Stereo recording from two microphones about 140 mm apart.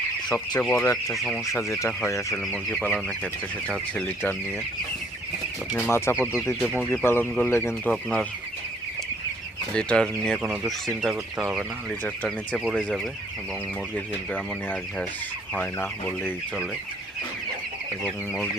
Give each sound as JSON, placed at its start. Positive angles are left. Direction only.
{"t": 0.6, "sound": "speech", "side_deg": 10}
{"t": 1.3, "sound": "speech", "side_deg": 20}
{"t": 2.4, "sound": "speech", "side_deg": 5}
{"t": 3.9, "sound": "speech", "side_deg": 15}
{"t": 5.7, "sound": "speech", "side_deg": 20}
{"t": 9.7, "sound": "speech", "side_deg": 5}
{"t": 11.9, "sound": "speech", "side_deg": 10}
{"t": 12.5, "sound": "speech", "side_deg": -5}
{"t": 13.9, "sound": "speech", "side_deg": 10}